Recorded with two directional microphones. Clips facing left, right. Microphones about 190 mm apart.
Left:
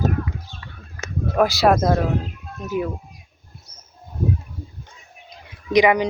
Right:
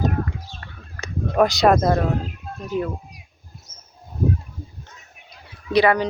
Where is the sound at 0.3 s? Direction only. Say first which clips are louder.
Even; 55° right (ahead or behind).